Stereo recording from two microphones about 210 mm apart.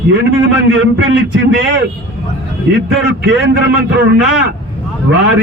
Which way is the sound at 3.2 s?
55° right (ahead or behind).